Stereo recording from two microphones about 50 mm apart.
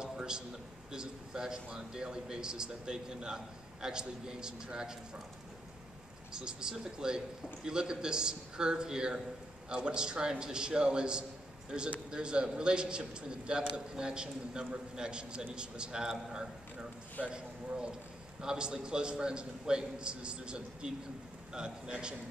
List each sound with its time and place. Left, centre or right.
0.0 s a sound: centre
0.9 s speech: centre
6.3 s a man's voice: centre